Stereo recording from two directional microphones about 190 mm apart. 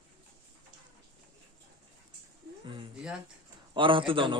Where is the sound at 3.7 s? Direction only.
25° right (ahead or behind).